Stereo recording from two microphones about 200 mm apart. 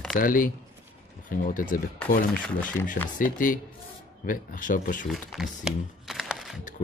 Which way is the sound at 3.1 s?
40° left (ahead or behind).